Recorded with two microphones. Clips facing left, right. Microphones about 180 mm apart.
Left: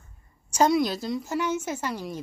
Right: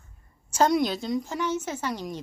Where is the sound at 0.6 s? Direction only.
5° left (ahead or behind).